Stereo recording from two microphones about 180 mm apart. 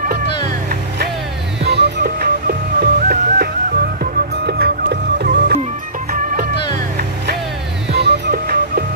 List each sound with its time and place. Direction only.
0.7 s vehicle: 60° right (ahead or behind)
1.6 s music: 70° right (ahead or behind)
7.9 s music: 65° right (ahead or behind)